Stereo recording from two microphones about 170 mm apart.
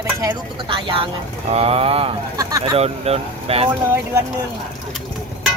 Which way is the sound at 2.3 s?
20° right (ahead or behind).